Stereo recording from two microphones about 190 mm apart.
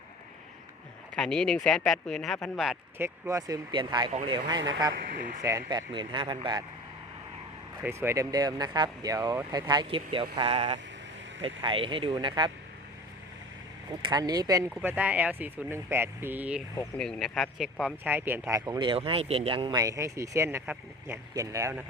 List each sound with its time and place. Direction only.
1.1 s speech: 5° left (ahead or behind)
3.0 s speech: 15° right (ahead or behind)
4.9 s speech: 45° right (ahead or behind)
5.4 s speech: 15° right (ahead or behind)
7.8 s speech: 15° right (ahead or behind)
14.1 s speech: 20° right (ahead or behind)